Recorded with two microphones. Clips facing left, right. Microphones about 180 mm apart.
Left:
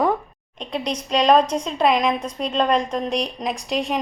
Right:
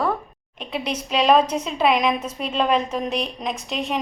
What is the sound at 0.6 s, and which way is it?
A woman's voice, 5° right (ahead or behind).